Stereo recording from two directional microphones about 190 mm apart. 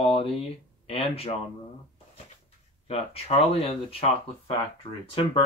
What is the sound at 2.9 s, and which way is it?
Speech, 30° left (ahead or behind).